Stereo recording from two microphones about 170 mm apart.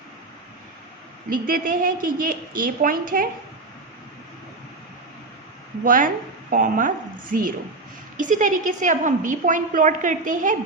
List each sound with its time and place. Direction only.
1.3 s a woman's voice: 55° right (ahead or behind)
5.8 s a woman's voice: 55° right (ahead or behind)